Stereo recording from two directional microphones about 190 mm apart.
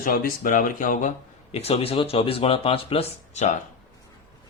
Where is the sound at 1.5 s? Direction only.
35° left (ahead or behind).